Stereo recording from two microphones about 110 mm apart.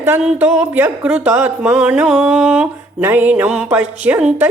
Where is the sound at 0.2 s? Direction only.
15° right (ahead or behind).